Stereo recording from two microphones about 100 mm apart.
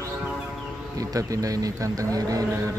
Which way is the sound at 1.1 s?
35° right (ahead or behind).